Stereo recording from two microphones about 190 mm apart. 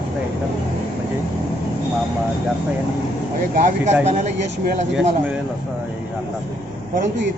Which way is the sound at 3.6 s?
45° right (ahead or behind).